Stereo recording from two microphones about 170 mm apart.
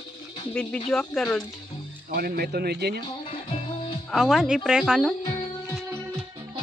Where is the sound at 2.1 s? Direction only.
65° right (ahead or behind).